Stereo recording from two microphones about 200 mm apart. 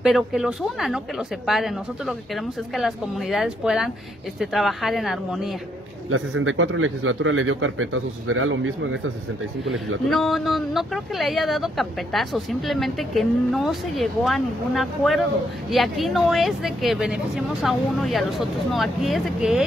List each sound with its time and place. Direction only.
0.0 s speech: centre (ahead or behind)
6.0 s a man's voice: 90° right
10.0 s speech: centre (ahead or behind)